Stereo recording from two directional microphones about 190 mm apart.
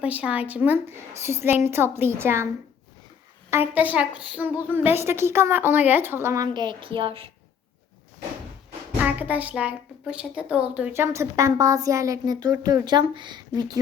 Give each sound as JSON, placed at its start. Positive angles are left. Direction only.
{"t": 0.0, "sound": "a woman's voice", "side_deg": -5}
{"t": 3.8, "sound": "a woman's voice", "side_deg": -5}
{"t": 9.0, "sound": "a woman's voice", "side_deg": -10}